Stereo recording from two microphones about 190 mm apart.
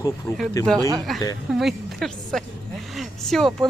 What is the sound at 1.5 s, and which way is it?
Speech, centre (ahead or behind).